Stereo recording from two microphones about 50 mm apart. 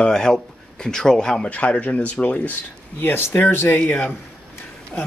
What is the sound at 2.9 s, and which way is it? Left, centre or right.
Speech, left.